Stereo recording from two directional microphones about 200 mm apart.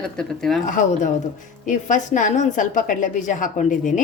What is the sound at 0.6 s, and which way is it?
A woman's voice, 40° left (ahead or behind).